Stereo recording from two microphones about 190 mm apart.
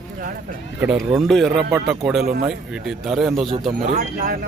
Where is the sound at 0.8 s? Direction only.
5° right (ahead or behind).